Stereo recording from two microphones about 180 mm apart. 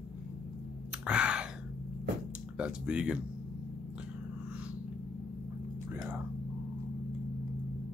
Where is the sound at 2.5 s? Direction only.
5° right (ahead or behind).